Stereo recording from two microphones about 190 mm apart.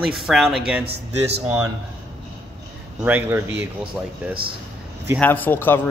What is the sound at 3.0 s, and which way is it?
Speech, 10° right (ahead or behind).